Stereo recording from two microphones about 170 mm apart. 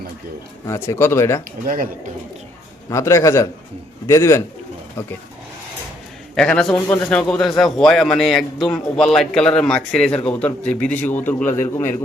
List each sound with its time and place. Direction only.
0.7 s a man's voice: 15° left (ahead or behind)
1.6 s speech: 55° right (ahead or behind)
2.9 s a man's voice: 20° left (ahead or behind)
6.3 s a man's voice: 5° left (ahead or behind)